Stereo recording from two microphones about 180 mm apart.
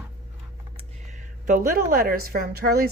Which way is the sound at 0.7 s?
45° right (ahead or behind).